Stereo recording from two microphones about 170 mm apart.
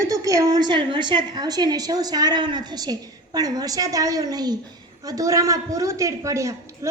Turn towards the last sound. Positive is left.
turn(degrees=-20)  # may be behind; listen again after turning